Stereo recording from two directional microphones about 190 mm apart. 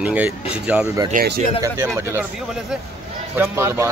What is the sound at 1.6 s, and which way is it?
Speech, 15° right (ahead or behind).